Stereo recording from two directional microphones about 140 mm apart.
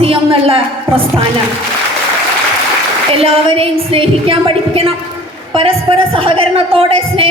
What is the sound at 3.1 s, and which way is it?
Speech, 40° right (ahead or behind).